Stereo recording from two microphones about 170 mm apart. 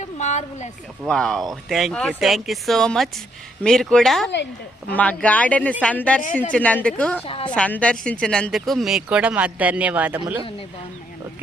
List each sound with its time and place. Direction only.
0.0 s speech: 45° left (ahead or behind)
1.0 s speech: 5° left (ahead or behind)
7.3 s a woman's voice: 30° left (ahead or behind)
7.5 s speech: 5° left (ahead or behind); by 10.2 s 10° right (ahead or behind)